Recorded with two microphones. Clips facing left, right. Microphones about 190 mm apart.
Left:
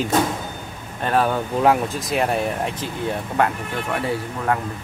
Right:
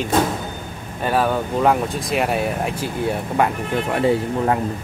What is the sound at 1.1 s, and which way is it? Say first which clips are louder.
Speech: right 1 dB; centre (ahead or behind).